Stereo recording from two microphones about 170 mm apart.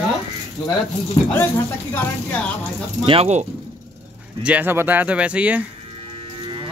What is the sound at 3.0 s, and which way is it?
Speech, 40° right (ahead or behind).